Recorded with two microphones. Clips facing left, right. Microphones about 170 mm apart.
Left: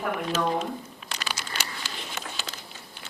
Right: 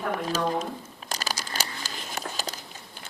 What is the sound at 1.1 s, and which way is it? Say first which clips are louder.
Crumpling: right 2 dB; 40° right (ahead or behind).